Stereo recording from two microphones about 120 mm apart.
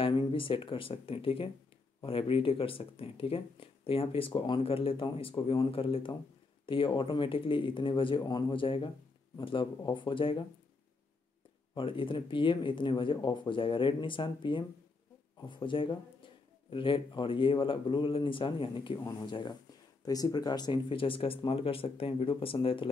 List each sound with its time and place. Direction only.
0.0 s speech: 45° left (ahead or behind)
11.7 s speech: 45° left (ahead or behind)